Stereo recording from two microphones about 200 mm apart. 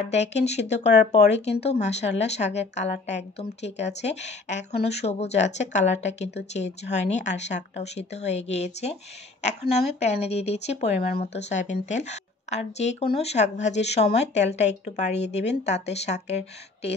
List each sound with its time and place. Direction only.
0.1 s speech: 35° left (ahead or behind)
10.2 s speech: 30° left (ahead or behind)